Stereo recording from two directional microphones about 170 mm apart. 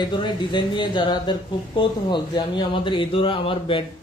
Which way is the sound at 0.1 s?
30° left (ahead or behind).